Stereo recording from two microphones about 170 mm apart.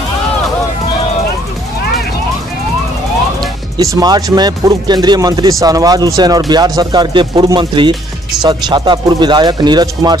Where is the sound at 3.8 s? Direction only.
20° right (ahead or behind).